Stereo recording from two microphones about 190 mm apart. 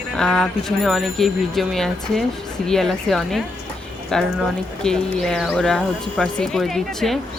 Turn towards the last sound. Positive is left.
turn(degrees=0)  # may be behind; listen again after turning